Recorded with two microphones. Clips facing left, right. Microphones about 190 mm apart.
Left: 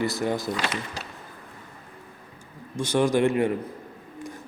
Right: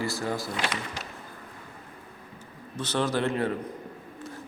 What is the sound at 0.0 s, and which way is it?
Speech, 20° left (ahead or behind).